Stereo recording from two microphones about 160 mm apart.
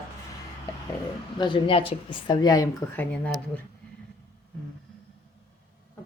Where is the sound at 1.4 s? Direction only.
30° left (ahead or behind).